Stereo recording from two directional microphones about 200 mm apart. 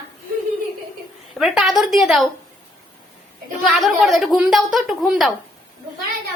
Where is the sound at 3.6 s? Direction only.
Centre (ahead or behind).